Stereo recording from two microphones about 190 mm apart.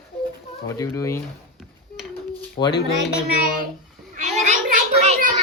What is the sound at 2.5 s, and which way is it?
Speech, 25° left (ahead or behind).